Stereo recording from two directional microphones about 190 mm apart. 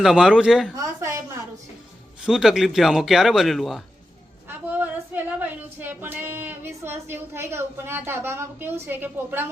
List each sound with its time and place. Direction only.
0.0 s a man's voice: 5° right (ahead or behind)
0.8 s a sound: 15° right (ahead or behind)
2.2 s a man's voice: 5° right (ahead or behind)